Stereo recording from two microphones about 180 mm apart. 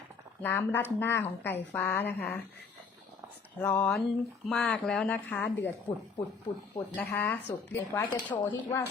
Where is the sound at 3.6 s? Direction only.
10° left (ahead or behind).